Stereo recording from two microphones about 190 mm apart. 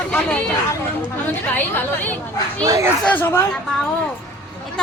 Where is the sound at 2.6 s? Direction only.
20° right (ahead or behind).